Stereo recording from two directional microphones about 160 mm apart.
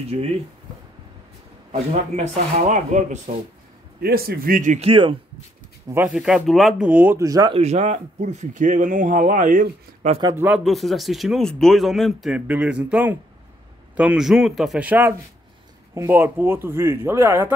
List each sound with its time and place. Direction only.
0.1 s speech: 40° right (ahead or behind)
1.7 s speech: 50° right (ahead or behind)
4.0 s speech: 70° right (ahead or behind); by 4.8 s 55° right (ahead or behind)
4.8 s speech: 35° right (ahead or behind)
5.9 s speech: 15° right (ahead or behind)
6.1 s speech: 5° right (ahead or behind)
6.9 s speech: 10° right (ahead or behind)
7.2 s speech: 25° right (ahead or behind)
7.5 s speech: 45° right (ahead or behind)
10.2 s speech: 15° right (ahead or behind)
10.6 s speech: centre (ahead or behind); by 17.5 s 15° right (ahead or behind)